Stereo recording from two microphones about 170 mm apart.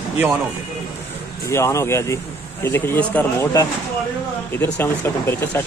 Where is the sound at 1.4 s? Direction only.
15° left (ahead or behind).